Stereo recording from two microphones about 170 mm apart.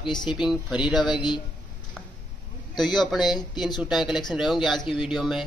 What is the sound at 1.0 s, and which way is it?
Speech, 25° left (ahead or behind).